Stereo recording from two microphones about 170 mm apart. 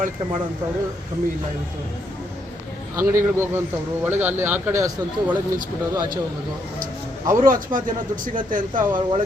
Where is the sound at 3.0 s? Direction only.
15° right (ahead or behind).